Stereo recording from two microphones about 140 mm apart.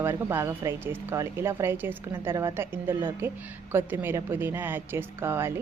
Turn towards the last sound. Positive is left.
turn(degrees=-15)  # may be behind; listen again after turning